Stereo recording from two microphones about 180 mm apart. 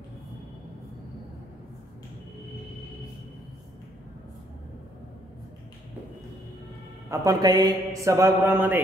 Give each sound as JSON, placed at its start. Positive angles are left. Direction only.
{"t": 7.1, "sound": "speech", "side_deg": -20}